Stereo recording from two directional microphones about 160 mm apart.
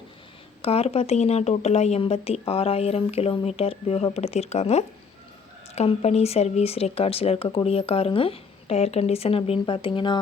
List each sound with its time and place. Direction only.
0.6 s speech: 40° left (ahead or behind)